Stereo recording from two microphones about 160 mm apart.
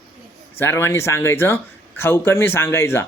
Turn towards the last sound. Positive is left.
turn(degrees=15)  # may be behind; listen again after turning